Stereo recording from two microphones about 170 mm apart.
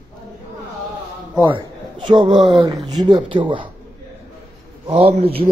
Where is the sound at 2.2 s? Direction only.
Centre (ahead or behind).